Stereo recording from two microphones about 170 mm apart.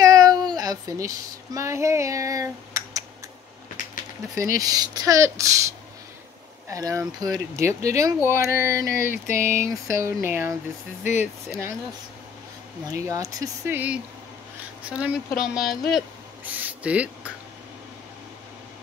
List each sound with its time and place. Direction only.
0.0 s speech: 25° right (ahead or behind)
4.4 s speech: 20° right (ahead or behind)
12.8 s speech: 20° right (ahead or behind); by 15.8 s centre (ahead or behind)
16.4 s a sound: 10° right (ahead or behind)